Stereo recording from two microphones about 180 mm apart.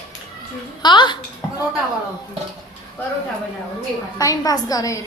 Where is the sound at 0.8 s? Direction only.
25° left (ahead or behind).